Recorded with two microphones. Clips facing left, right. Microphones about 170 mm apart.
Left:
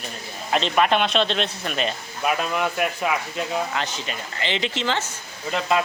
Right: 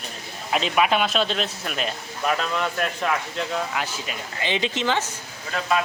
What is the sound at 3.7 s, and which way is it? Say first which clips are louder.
Speech: left 1 dB; 5° right (ahead or behind).